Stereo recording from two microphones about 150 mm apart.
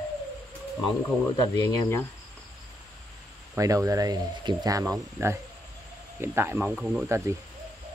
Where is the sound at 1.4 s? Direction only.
20° left (ahead or behind).